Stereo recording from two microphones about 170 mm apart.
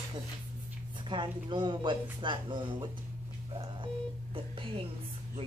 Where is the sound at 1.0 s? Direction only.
30° right (ahead or behind).